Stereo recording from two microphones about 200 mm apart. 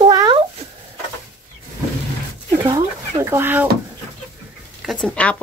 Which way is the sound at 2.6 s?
15° right (ahead or behind).